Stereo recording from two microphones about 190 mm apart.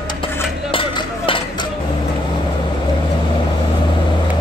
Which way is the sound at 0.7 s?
30° left (ahead or behind).